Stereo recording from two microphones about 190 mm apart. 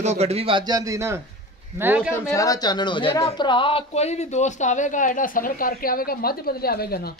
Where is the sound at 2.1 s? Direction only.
15° left (ahead or behind).